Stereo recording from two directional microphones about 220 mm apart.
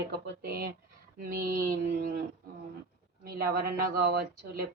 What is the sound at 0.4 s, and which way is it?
Speech, 45° right (ahead or behind).